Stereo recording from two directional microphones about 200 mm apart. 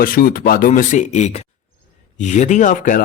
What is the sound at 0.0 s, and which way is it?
A man's voice, 45° left (ahead or behind).